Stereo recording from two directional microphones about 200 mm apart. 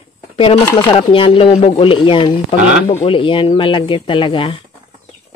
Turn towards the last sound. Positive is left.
turn(degrees=25)  # may be behind; listen again after turning